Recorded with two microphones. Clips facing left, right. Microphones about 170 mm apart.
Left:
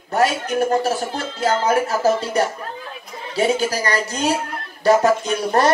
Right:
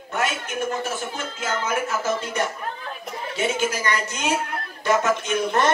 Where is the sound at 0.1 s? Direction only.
35° left (ahead or behind).